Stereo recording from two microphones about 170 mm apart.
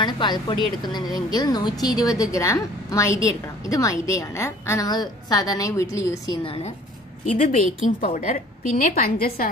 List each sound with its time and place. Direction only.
0.0 s a woman's voice: 25° left (ahead or behind)
6.4 s a woman's voice: 35° left (ahead or behind)
7.2 s a woman's voice: 50° left (ahead or behind)